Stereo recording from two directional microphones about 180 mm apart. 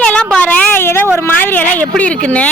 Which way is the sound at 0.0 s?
5° left (ahead or behind).